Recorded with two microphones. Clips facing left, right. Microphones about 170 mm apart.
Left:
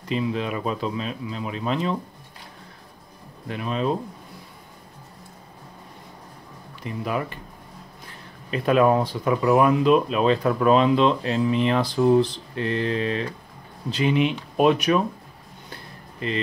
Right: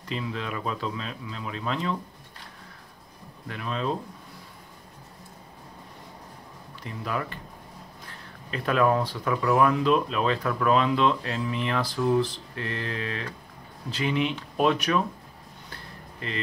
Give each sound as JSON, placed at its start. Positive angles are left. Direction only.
{"t": 0.1, "sound": "speech", "side_deg": 20}
{"t": 3.4, "sound": "speech", "side_deg": 20}
{"t": 6.8, "sound": "speech", "side_deg": 15}
{"t": 15.7, "sound": "a sound", "side_deg": 20}